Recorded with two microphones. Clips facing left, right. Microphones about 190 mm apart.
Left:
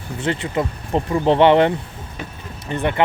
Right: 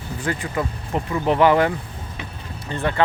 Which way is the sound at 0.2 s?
25° left (ahead or behind).